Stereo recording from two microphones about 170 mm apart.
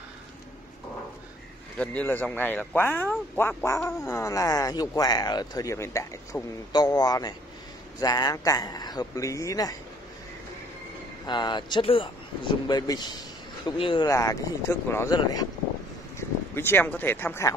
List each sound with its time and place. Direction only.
1.8 s speech: 10° left (ahead or behind)
11.2 s speech: 25° left (ahead or behind)